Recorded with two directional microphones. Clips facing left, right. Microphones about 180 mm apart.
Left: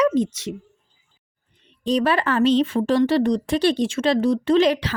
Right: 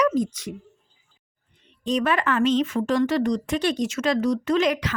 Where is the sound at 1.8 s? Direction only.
35° left (ahead or behind).